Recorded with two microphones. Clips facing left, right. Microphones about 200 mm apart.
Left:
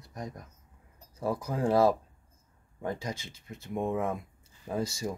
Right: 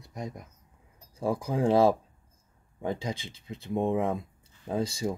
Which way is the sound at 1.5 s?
15° right (ahead or behind).